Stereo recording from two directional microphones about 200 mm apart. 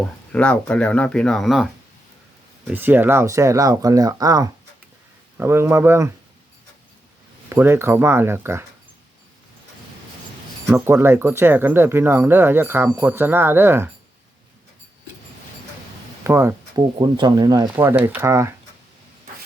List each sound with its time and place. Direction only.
0.0 s speech: 5° left (ahead or behind); by 6.1 s 15° right (ahead or behind)
7.5 s speech: 10° right (ahead or behind)
10.7 s speech: 15° right (ahead or behind)
16.2 s speech: 10° right (ahead or behind)